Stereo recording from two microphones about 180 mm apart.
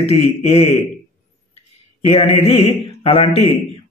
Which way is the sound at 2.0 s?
35° left (ahead or behind).